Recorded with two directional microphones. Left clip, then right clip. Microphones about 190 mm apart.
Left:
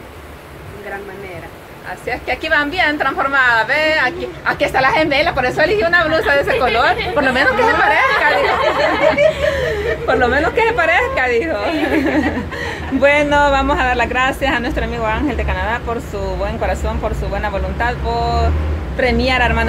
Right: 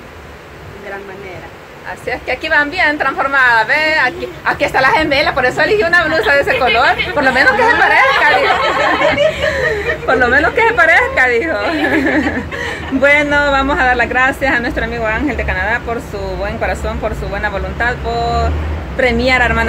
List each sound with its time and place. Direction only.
2.0 s a woman's voice: centre (ahead or behind)
9.5 s a woman's voice: 5° left (ahead or behind)